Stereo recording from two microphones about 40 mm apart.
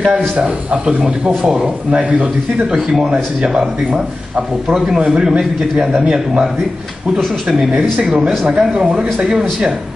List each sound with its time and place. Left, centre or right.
0.8 s speech: right
1.4 s speech: centre
3.1 s speech: centre